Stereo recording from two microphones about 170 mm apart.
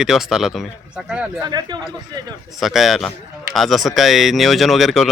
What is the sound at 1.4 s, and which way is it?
Speech, 25° right (ahead or behind).